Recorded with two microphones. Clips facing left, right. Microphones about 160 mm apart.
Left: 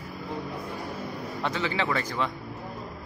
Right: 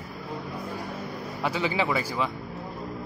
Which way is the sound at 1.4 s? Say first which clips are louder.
Right 2 dB; 10° right (ahead or behind).